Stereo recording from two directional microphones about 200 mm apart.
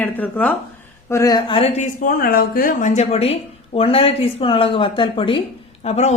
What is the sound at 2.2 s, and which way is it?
A woman's voice, 50° left (ahead or behind).